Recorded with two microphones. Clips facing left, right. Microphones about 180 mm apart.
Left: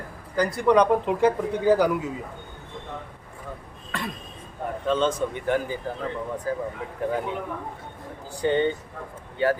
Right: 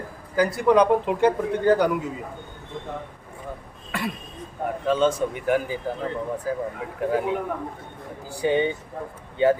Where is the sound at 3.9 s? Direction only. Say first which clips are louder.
Right 3 dB; 10° right (ahead or behind).